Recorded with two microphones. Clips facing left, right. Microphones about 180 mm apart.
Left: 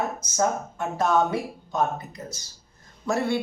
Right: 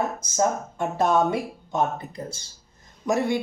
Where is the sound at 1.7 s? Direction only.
30° right (ahead or behind).